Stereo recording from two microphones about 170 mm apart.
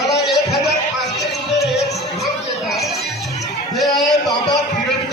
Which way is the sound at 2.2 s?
Centre (ahead or behind).